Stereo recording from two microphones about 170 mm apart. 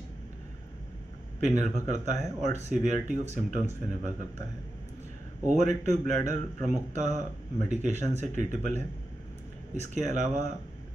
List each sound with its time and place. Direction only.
1.4 s speech: 45° right (ahead or behind)
5.5 s speech: 45° right (ahead or behind)